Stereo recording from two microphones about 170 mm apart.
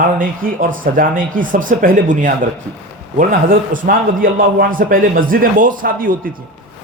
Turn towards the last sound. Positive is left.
turn(degrees=-55)  # may be behind; listen again after turning